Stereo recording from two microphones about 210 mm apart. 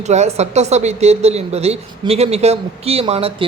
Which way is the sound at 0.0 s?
35° right (ahead or behind).